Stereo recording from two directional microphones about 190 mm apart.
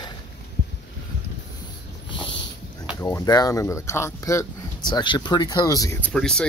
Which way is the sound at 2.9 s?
15° left (ahead or behind).